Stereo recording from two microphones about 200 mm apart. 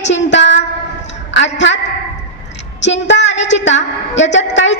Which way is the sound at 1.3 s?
65° left (ahead or behind).